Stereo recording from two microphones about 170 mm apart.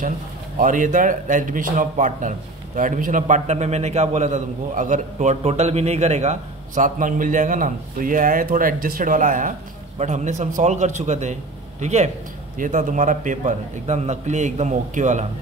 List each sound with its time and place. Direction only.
0.6 s a man's voice: 50° right (ahead or behind)